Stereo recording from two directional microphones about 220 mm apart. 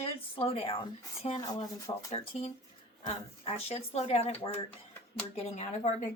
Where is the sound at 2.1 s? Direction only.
30° left (ahead or behind).